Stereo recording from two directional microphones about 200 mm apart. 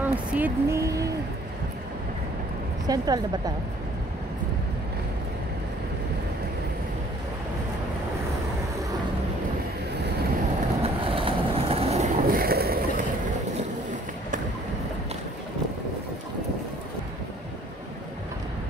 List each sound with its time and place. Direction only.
0.0 s speech: 10° right (ahead or behind)
2.9 s a woman's voice: 20° right (ahead or behind)
10.8 s train: 25° right (ahead or behind); by 13.0 s 50° right (ahead or behind)